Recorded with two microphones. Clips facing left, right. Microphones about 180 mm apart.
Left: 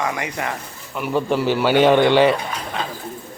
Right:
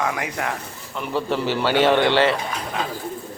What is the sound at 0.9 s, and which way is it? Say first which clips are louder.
A man's voice: left 4 dB; 15° left (ahead or behind).